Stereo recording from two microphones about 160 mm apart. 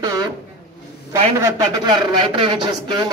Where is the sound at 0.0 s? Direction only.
25° right (ahead or behind).